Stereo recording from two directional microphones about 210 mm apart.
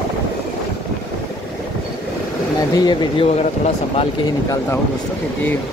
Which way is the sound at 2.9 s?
25° left (ahead or behind).